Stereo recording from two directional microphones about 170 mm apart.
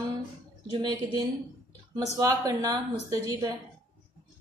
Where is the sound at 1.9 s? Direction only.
20° right (ahead or behind).